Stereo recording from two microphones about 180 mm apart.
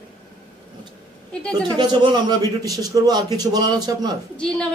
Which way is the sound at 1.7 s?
25° right (ahead or behind).